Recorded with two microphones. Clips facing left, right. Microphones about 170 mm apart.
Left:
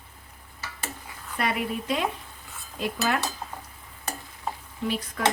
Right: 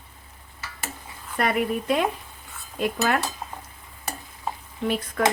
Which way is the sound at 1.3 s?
50° right (ahead or behind).